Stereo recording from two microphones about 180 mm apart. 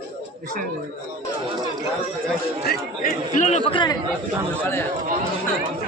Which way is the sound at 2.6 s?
55° left (ahead or behind).